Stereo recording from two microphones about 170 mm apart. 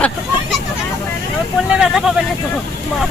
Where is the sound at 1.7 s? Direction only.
5° right (ahead or behind).